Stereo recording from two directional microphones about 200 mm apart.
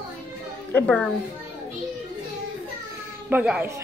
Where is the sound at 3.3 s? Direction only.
5° right (ahead or behind).